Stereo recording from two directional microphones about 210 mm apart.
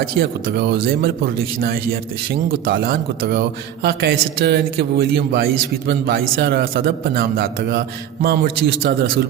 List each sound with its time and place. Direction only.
0.0 s a man's voice: 45° right (ahead or behind)